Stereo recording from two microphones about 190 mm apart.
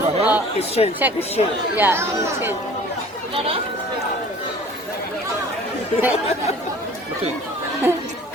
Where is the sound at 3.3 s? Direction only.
30° right (ahead or behind).